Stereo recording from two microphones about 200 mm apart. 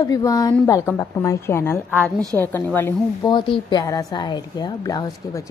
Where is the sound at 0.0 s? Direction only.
15° left (ahead or behind).